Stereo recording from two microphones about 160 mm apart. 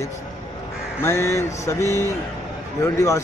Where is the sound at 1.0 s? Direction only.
15° left (ahead or behind).